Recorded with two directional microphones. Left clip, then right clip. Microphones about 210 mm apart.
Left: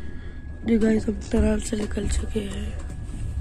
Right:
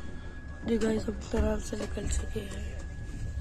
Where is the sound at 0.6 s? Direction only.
25° left (ahead or behind).